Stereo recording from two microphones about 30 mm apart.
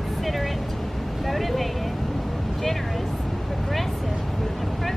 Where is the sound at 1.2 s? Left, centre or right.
Centre.